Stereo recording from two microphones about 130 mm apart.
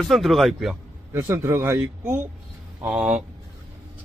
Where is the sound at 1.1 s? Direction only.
20° right (ahead or behind).